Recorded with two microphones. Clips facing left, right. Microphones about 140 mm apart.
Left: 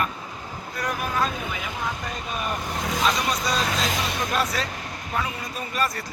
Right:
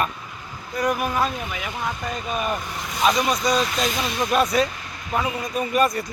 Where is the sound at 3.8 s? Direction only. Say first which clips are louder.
Right 2 dB; 90° left.